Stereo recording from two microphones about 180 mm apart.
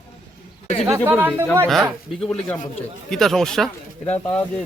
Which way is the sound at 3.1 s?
Centre (ahead or behind).